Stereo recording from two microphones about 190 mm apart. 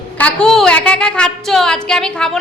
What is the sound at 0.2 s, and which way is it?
A woman's voice, 5° left (ahead or behind).